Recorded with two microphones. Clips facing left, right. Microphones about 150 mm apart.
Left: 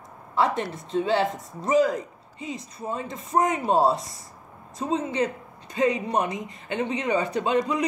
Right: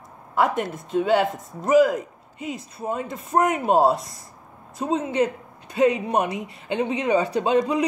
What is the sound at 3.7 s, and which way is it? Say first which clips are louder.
Speech: right 3 dB; 25° right (ahead or behind).